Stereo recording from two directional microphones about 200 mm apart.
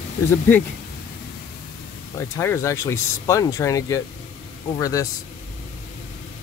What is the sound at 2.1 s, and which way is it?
Speech, 15° left (ahead or behind).